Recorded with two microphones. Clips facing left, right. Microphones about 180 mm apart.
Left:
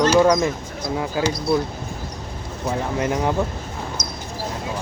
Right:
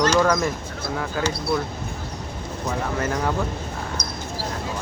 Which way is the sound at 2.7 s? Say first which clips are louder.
Left 3 dB; 15° left (ahead or behind).